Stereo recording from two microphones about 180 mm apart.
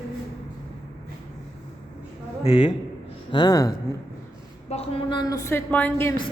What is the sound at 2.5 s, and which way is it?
Music, 35° left (ahead or behind).